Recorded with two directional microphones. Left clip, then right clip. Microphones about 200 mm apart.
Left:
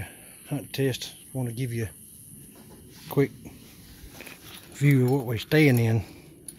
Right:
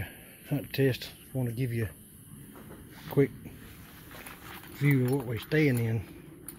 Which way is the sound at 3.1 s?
10° left (ahead or behind).